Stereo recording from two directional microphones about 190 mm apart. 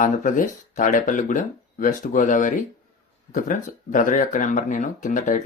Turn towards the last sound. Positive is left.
turn(degrees=40)  # may be behind; listen again after turning